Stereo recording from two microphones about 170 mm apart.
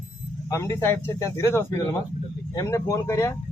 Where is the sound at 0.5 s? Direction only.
15° left (ahead or behind).